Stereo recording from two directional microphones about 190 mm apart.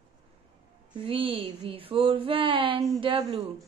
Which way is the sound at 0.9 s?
25° right (ahead or behind).